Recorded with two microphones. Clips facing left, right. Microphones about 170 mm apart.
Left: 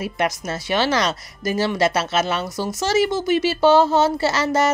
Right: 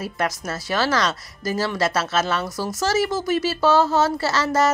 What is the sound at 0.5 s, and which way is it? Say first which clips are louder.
A woman's voice: left 1 dB; 20° left (ahead or behind).